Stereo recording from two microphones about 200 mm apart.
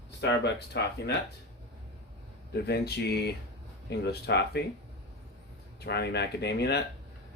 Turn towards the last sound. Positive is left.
turn(degrees=55)  # may be behind; listen again after turning